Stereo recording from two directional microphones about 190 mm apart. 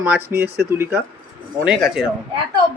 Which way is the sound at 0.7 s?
15° right (ahead or behind).